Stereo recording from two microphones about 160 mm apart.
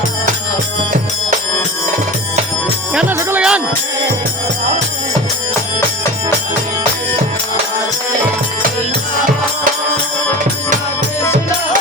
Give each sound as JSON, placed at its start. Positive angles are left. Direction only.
{"t": 2.9, "sound": "music", "side_deg": -10}